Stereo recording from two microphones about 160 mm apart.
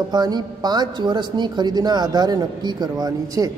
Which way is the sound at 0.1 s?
25° right (ahead or behind).